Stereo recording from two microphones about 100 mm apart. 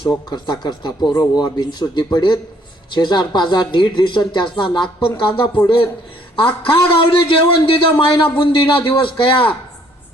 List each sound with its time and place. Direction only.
0.3 s a man's voice: 50° left (ahead or behind)